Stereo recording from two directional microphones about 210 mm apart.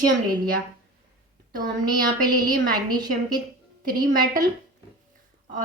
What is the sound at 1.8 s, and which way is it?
Speech, 20° right (ahead or behind).